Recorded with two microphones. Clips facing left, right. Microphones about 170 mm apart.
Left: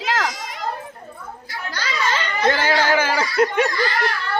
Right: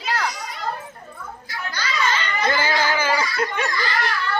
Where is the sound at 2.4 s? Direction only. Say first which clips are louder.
Left 4 dB; 70° left (ahead or behind).